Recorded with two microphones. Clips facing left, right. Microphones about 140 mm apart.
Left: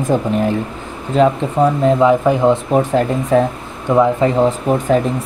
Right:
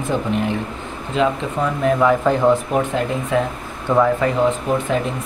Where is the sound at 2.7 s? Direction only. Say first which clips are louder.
Left 5 dB; 30° left (ahead or behind).